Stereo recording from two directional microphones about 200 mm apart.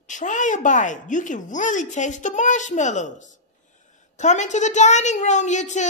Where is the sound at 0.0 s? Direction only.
40° left (ahead or behind).